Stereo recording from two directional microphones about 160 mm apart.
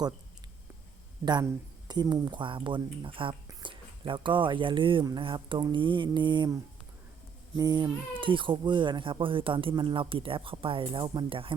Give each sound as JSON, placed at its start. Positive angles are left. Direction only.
{"t": 1.2, "sound": "speech", "side_deg": -25}